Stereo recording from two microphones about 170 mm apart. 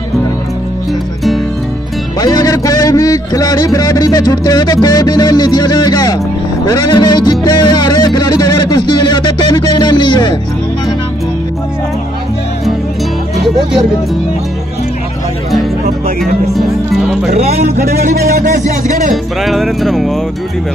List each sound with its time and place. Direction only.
2.1 s music: 20° left (ahead or behind)
16.5 s music: centre (ahead or behind)
17.3 s speech: 40° right (ahead or behind)
17.9 s a sound: 70° right (ahead or behind)
19.4 s music: centre (ahead or behind)